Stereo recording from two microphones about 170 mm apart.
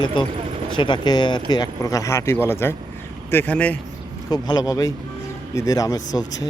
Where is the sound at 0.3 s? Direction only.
35° right (ahead or behind).